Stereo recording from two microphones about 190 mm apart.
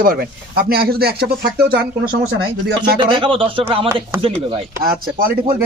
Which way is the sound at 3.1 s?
25° right (ahead or behind).